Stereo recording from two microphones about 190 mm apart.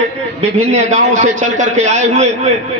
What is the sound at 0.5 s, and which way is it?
A man's voice, 35° right (ahead or behind).